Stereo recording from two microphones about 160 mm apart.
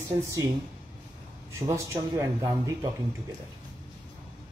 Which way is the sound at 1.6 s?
20° right (ahead or behind).